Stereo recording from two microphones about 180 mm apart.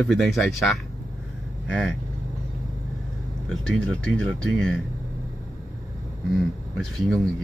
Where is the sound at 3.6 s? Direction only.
5° left (ahead or behind).